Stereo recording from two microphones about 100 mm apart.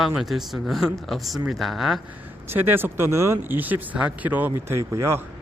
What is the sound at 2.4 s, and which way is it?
Speech, 20° right (ahead or behind).